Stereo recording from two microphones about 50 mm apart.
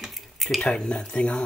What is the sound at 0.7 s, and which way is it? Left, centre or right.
Speech, centre.